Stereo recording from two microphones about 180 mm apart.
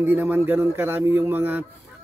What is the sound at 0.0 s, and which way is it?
Speech, 10° right (ahead or behind).